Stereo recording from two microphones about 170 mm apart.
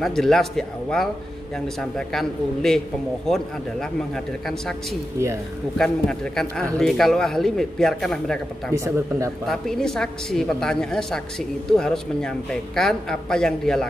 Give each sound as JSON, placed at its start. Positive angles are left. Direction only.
{"t": 0.0, "sound": "a woman's voice", "side_deg": 5}
{"t": 5.8, "sound": "a woman's voice", "side_deg": 5}
{"t": 8.7, "sound": "speech", "side_deg": -20}
{"t": 9.5, "sound": "a woman's voice", "side_deg": 5}